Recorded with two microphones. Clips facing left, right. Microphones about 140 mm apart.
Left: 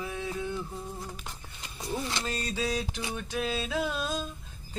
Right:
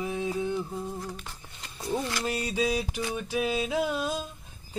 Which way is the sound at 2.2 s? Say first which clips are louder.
Right 4 dB; 15° right (ahead or behind).